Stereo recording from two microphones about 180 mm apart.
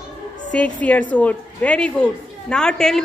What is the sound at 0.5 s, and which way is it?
A woman's voice, 5° left (ahead or behind).